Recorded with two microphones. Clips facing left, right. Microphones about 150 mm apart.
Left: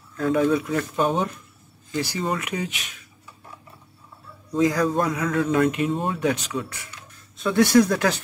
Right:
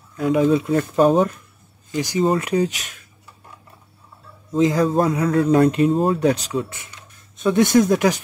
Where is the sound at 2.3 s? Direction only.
35° right (ahead or behind).